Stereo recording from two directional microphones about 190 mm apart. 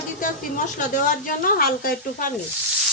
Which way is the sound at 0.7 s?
45° left (ahead or behind).